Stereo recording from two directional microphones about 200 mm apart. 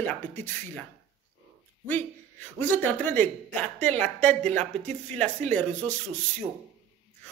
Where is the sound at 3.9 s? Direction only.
35° right (ahead or behind).